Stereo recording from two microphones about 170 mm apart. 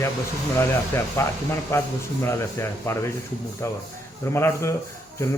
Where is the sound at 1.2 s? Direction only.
15° left (ahead or behind).